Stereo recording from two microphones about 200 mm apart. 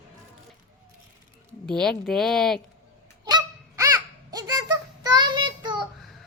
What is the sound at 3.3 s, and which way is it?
Honk, 20° right (ahead or behind).